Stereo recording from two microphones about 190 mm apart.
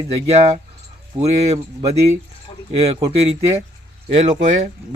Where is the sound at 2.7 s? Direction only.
30° right (ahead or behind).